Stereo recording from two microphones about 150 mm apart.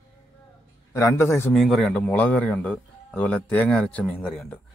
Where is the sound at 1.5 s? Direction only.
Centre (ahead or behind).